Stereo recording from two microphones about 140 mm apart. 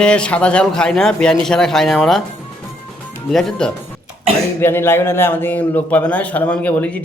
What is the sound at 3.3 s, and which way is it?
Speech, 5° left (ahead or behind).